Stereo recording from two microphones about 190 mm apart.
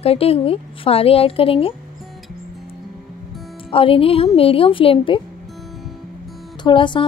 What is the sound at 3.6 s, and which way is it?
Speech, 30° left (ahead or behind).